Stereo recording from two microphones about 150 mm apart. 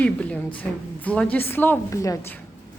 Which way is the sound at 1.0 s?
10° left (ahead or behind).